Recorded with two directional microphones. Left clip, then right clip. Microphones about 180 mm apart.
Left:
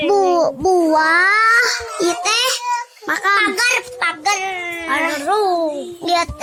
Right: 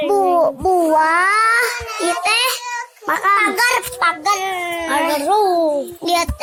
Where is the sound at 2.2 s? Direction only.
50° left (ahead or behind).